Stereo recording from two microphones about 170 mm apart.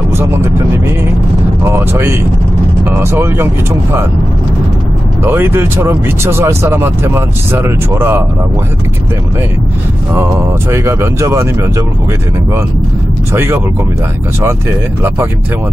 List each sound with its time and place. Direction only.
1.6 s speech: 15° right (ahead or behind)
5.2 s speech: 15° right (ahead or behind)
10.1 s speech: 15° right (ahead or behind)
13.3 s speech: 15° right (ahead or behind)